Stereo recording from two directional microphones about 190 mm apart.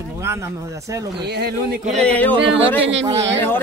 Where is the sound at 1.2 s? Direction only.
60° right (ahead or behind).